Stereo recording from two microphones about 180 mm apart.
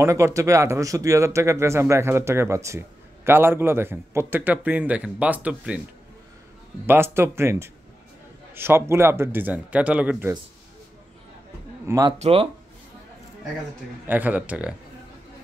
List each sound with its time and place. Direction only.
0.0 s speech: 15° right (ahead or behind)
6.9 s speech: 15° right (ahead or behind)
11.8 s speech: 20° right (ahead or behind)
12.1 s speech: 30° right (ahead or behind)
14.0 s speech: 10° right (ahead or behind)